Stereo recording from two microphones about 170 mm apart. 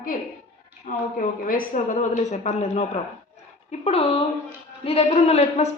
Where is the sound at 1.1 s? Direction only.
50° left (ahead or behind).